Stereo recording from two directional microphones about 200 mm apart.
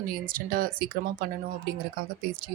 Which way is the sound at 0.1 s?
45° right (ahead or behind).